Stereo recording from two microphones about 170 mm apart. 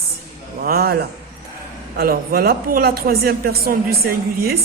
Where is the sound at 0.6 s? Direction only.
65° right (ahead or behind).